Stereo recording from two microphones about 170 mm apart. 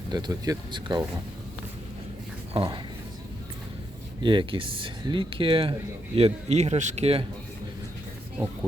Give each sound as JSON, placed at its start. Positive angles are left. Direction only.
{"t": 0.1, "sound": "speech", "side_deg": -25}
{"t": 2.5, "sound": "speech", "side_deg": -30}
{"t": 4.2, "sound": "speech", "side_deg": -30}